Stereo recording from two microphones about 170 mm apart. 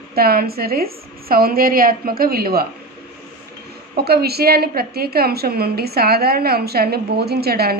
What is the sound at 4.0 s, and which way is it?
A woman's voice, 70° right (ahead or behind).